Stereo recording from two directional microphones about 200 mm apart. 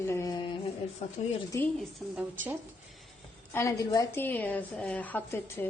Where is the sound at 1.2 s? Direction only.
30° left (ahead or behind).